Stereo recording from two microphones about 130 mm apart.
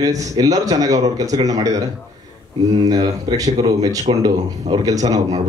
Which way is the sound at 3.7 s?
30° right (ahead or behind).